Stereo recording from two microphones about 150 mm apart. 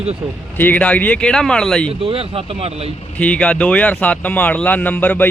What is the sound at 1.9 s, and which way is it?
Speech, 40° right (ahead or behind).